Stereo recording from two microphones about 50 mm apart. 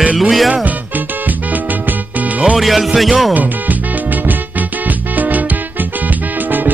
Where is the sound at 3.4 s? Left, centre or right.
Right.